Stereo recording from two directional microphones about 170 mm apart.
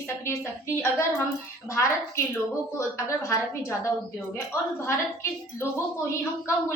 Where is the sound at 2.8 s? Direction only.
15° left (ahead or behind).